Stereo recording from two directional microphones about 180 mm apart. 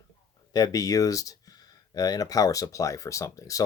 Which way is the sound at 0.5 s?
20° left (ahead or behind).